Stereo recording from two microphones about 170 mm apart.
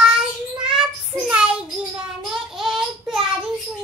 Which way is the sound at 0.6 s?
5° right (ahead or behind).